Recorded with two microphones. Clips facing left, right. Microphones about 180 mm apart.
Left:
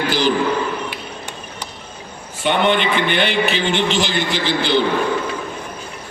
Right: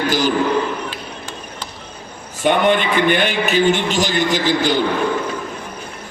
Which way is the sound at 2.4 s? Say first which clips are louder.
Right 2 dB; 45° right (ahead or behind).